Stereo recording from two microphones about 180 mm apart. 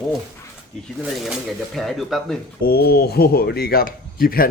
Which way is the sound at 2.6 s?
60° left (ahead or behind).